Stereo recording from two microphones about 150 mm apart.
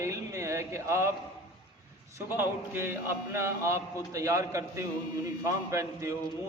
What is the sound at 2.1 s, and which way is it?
A man's voice, 15° right (ahead or behind).